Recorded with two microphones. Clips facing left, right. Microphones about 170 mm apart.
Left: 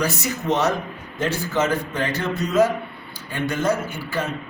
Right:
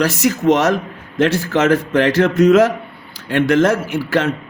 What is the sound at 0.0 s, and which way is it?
A man's voice, 90° right.